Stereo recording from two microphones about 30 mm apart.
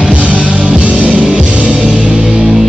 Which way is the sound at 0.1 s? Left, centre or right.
Right.